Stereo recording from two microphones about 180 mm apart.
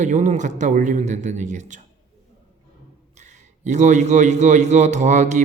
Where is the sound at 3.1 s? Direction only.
40° right (ahead or behind).